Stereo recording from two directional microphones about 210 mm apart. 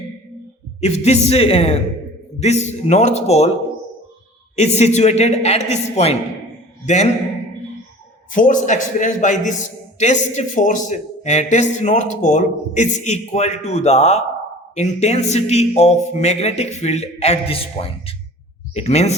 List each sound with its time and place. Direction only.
0.8 s a woman's voice: 30° left (ahead or behind)
4.5 s a man's voice: 30° left (ahead or behind)
8.3 s a man's voice: 40° left (ahead or behind)